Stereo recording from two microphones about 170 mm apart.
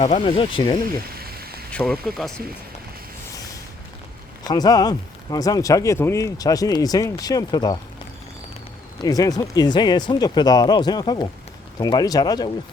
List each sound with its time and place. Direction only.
0.3 s speech: 30° left (ahead or behind)
1.1 s a sound: 65° right (ahead or behind)
1.7 s speech: 5° left (ahead or behind)
4.4 s speech: 25° left (ahead or behind)
9.0 s speech: 20° left (ahead or behind)